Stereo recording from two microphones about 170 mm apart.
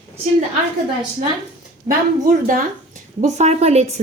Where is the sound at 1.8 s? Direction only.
55° right (ahead or behind).